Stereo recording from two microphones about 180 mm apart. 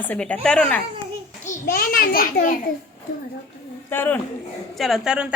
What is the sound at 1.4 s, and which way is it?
A child's voice, 50° left (ahead or behind).